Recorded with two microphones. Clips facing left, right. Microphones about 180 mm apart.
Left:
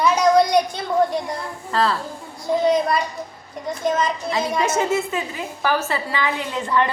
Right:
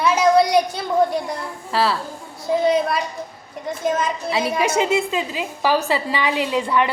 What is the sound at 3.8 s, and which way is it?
A child's voice, 5° right (ahead or behind).